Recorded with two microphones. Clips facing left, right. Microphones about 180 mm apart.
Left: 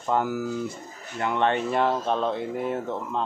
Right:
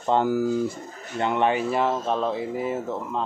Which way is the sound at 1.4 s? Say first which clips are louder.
Left 1 dB; 5° right (ahead or behind).